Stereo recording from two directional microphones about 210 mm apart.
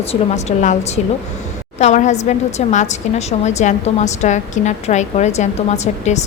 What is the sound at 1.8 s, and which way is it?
A woman's voice, 35° left (ahead or behind).